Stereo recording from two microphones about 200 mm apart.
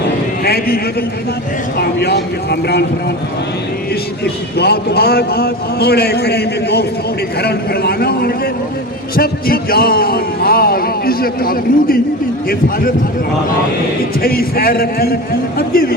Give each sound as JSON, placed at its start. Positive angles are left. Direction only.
{"t": 0.4, "sound": "a sound", "side_deg": 50}
{"t": 1.8, "sound": "a man's voice", "side_deg": 55}
{"t": 4.2, "sound": "a man's voice", "side_deg": 55}
{"t": 14.2, "sound": "a man's voice", "side_deg": 50}